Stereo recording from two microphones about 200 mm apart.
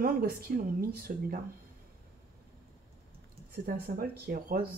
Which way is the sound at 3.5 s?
50° right (ahead or behind).